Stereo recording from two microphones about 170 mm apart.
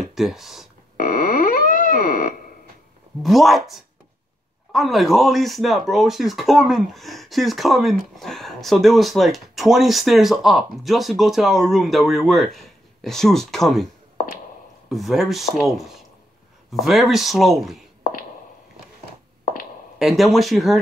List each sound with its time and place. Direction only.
0.1 s speech: centre (ahead or behind)
0.9 s synthesizer: 55° left (ahead or behind)
3.2 s speech: centre (ahead or behind)
4.7 s speech: centre (ahead or behind)
14.9 s speech: centre (ahead or behind)
16.7 s speech: centre (ahead or behind)
20.0 s speech: centre (ahead or behind)